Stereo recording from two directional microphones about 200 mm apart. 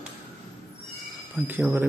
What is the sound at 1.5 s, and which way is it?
Speech, 10° right (ahead or behind).